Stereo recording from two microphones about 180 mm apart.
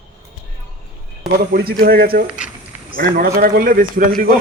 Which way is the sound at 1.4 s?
55° right (ahead or behind).